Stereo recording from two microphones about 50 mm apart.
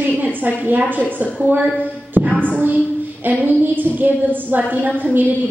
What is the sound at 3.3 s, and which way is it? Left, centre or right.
A woman's voice, right.